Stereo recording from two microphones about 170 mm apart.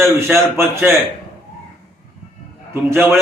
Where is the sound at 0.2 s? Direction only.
15° right (ahead or behind).